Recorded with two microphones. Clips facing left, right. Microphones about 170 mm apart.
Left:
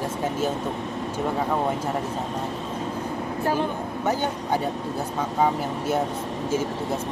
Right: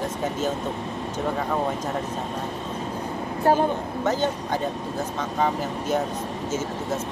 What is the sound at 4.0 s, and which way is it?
Speech, 15° left (ahead or behind).